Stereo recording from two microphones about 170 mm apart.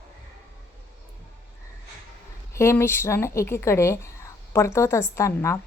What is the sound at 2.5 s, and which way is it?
Speech, 15° left (ahead or behind).